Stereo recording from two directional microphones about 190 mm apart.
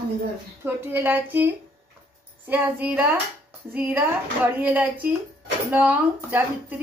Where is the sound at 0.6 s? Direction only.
10° right (ahead or behind).